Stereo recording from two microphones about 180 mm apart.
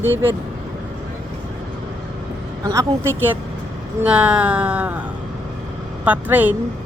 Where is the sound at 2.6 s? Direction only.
15° right (ahead or behind).